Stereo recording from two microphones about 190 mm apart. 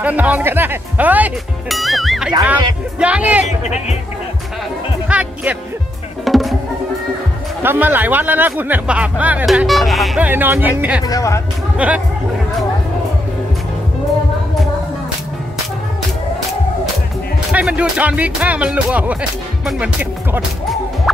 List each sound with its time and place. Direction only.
0.0 s speech: 10° right (ahead or behind)
5.0 s speech: 5° right (ahead or behind)
6.2 s music: centre (ahead or behind)
7.6 s speech: 10° right (ahead or behind)
11.0 s speech: 20° left (ahead or behind)
11.8 s speech: 5° right (ahead or behind)
17.5 s speech: 5° right (ahead or behind)